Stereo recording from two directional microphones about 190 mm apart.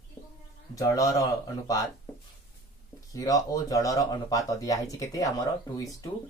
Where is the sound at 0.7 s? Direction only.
20° left (ahead or behind).